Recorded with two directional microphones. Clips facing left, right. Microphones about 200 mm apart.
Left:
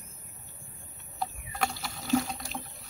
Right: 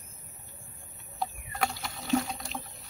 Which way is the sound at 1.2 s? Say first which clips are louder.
Even; centre (ahead or behind).